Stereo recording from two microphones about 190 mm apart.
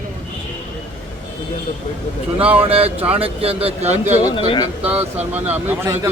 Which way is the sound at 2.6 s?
30° right (ahead or behind).